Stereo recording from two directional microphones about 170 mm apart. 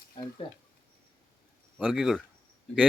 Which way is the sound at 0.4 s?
30° left (ahead or behind).